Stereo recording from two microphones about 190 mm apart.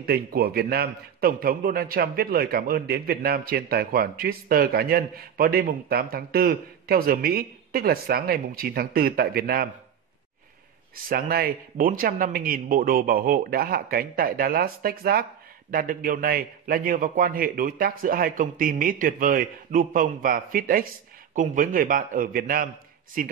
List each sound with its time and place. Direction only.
0.0 s a man's voice: 55° right (ahead or behind)
11.1 s a man's voice: 50° right (ahead or behind)